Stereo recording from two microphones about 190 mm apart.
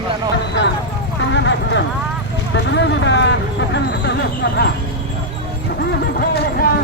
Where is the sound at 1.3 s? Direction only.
70° left (ahead or behind).